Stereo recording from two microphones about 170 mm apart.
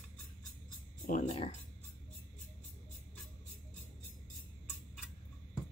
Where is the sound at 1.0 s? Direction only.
50° left (ahead or behind).